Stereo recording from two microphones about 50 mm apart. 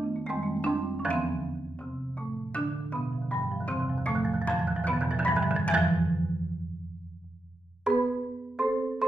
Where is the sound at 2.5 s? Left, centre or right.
Left.